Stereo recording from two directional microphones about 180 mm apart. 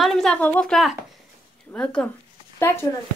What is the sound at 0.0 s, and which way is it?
A woman's voice, centre (ahead or behind).